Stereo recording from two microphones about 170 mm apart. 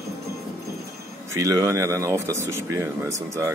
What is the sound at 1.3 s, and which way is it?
Speech, 15° right (ahead or behind).